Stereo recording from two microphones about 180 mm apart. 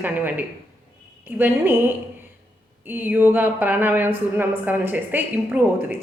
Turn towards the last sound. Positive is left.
turn(degrees=-10)  # may be behind; listen again after turning